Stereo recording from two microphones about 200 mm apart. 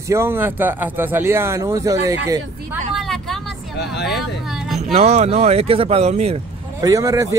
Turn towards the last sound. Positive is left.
turn(degrees=-15)  # may be behind; listen again after turning